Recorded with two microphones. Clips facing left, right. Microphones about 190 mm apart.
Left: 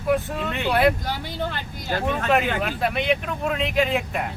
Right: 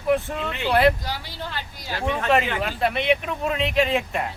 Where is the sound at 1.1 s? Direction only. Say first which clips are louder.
Left 4 dB; 55° left (ahead or behind).